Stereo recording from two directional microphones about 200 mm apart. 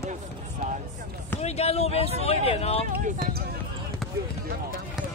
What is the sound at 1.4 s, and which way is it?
Speech, 30° left (ahead or behind).